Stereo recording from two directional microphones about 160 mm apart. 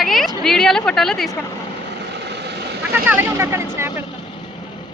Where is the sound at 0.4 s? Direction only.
5° left (ahead or behind).